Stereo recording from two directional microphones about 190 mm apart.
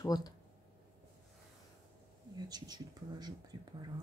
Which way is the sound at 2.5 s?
20° right (ahead or behind).